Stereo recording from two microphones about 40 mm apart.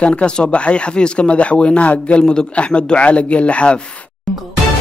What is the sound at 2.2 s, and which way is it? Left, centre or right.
A man's voice, left.